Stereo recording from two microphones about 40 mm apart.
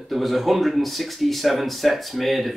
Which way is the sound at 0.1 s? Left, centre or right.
Centre.